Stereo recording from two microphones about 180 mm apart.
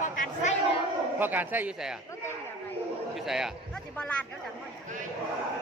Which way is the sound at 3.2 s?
Centre (ahead or behind).